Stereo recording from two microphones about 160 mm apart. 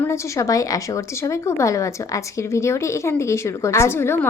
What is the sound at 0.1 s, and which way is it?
A woman's voice, 20° left (ahead or behind).